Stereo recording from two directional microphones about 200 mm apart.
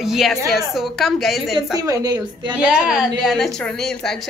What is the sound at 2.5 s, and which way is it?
A woman's voice, 5° right (ahead or behind).